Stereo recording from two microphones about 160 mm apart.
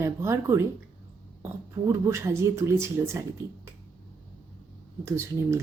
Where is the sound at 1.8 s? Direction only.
15° right (ahead or behind).